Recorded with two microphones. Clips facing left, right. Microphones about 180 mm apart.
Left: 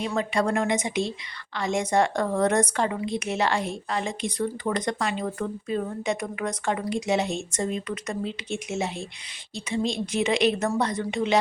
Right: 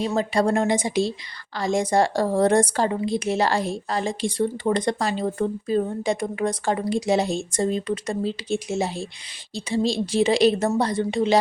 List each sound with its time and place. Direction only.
0.0 s speech: 35° right (ahead or behind)